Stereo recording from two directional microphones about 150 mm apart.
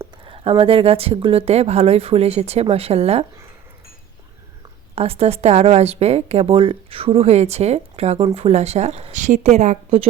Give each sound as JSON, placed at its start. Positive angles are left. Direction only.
{"t": 0.3, "sound": "speech", "side_deg": -40}
{"t": 4.9, "sound": "a woman's voice", "side_deg": -40}